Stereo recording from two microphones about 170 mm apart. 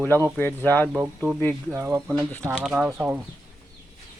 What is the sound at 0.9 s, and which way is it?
Speech, 5° right (ahead or behind).